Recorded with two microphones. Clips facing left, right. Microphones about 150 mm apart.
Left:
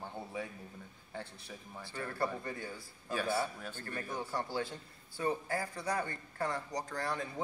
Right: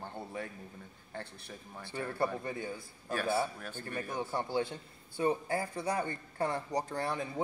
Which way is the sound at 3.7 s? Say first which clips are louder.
Right 3 dB; 20° right (ahead or behind).